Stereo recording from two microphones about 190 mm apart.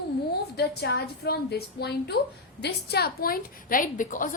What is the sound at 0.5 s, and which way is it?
A woman's voice, 60° left (ahead or behind).